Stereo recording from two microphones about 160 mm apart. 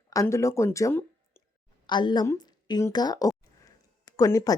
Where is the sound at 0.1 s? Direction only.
20° left (ahead or behind).